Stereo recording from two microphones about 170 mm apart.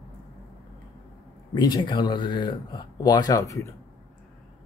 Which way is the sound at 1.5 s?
25° left (ahead or behind).